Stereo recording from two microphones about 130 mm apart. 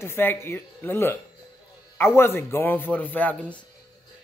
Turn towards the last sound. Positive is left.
turn(degrees=10)  # may be behind; listen again after turning